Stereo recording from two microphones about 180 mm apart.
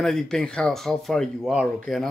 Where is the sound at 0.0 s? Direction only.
5° left (ahead or behind).